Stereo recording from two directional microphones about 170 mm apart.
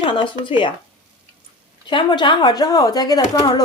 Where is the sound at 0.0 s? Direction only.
30° left (ahead or behind).